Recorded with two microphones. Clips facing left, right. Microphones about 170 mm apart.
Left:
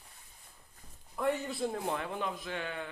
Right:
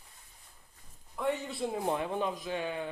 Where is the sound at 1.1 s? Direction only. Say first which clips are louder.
Even; centre (ahead or behind).